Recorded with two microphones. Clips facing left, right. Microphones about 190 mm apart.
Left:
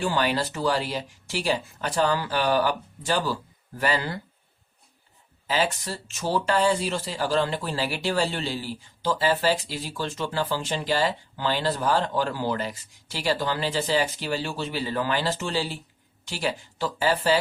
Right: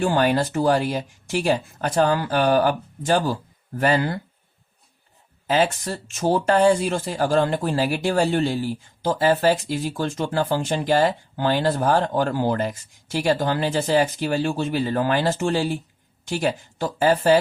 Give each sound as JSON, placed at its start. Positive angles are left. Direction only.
{"t": 0.0, "sound": "speech", "side_deg": -50}
{"t": 5.5, "sound": "speech", "side_deg": -50}